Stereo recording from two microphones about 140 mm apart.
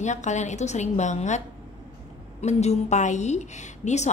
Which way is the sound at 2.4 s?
55° left (ahead or behind).